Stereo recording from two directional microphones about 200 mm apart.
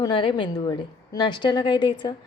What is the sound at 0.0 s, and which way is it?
A woman's voice, 25° left (ahead or behind).